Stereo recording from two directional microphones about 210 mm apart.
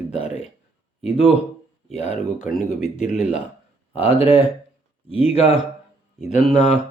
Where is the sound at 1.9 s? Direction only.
30° left (ahead or behind).